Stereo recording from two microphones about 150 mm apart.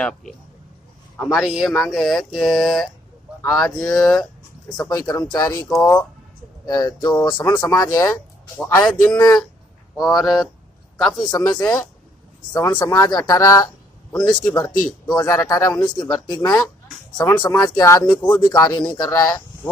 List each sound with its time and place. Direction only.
1.1 s speech: 5° left (ahead or behind)
4.8 s speech: 25° left (ahead or behind)
8.8 s speech: 5° left (ahead or behind)
12.8 s speech: 25° left (ahead or behind)
18.0 s speech: 10° left (ahead or behind)
18.5 s speech: 25° left (ahead or behind)